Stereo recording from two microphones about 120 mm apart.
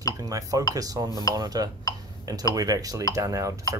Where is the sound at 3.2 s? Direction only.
30° right (ahead or behind).